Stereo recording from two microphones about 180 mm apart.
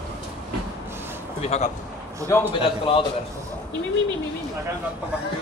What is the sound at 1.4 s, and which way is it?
Speech, 35° left (ahead or behind).